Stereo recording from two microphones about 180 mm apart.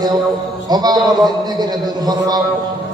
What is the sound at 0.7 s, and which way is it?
A man's voice, 20° right (ahead or behind).